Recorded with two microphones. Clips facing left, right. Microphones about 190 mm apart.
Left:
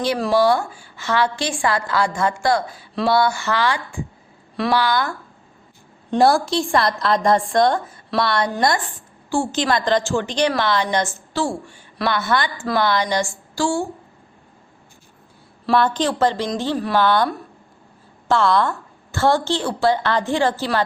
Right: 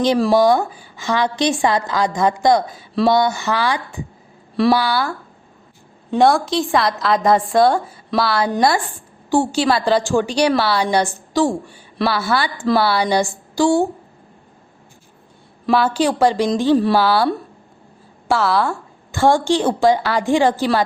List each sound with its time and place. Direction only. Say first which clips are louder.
0.0 s a woman's voice: right 4 dB; 20° right (ahead or behind)
6.1 s a woman's voice: right 1 dB; centre (ahead or behind); by 13.8 s 20° right (ahead or behind)
15.7 s a woman's voice: right 2 dB; 5° right (ahead or behind)
16.7 s speech: right 7 dB; 30° right (ahead or behind)
17.0 s a woman's voice: right 1 dB; 10° right (ahead or behind)
18.3 s a woman's voice: even; 5° right (ahead or behind)